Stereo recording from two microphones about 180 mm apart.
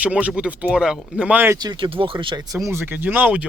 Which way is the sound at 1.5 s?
25° right (ahead or behind).